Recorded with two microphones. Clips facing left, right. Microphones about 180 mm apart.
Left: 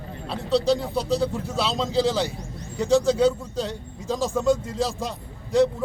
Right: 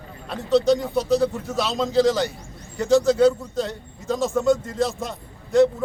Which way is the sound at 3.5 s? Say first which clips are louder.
Right 2 dB; 30° left (ahead or behind).